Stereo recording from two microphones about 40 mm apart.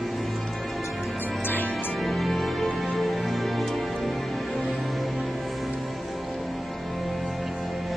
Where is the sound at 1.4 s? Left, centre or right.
Left.